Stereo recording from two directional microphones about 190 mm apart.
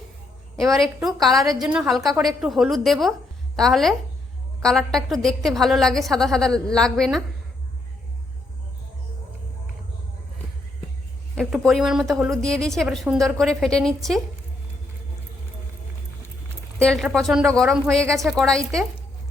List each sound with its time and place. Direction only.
0.5 s a woman's voice: centre (ahead or behind)
11.3 s a woman's voice: centre (ahead or behind)
16.7 s a woman's voice: 5° left (ahead or behind)